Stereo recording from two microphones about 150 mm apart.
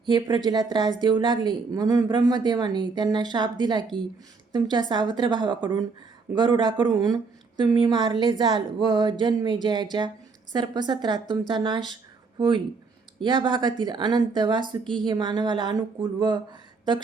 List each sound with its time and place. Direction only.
0.0 s speech: 30° right (ahead or behind)